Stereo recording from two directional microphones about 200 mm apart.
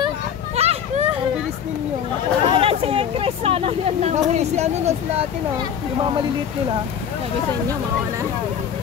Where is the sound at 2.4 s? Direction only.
30° right (ahead or behind).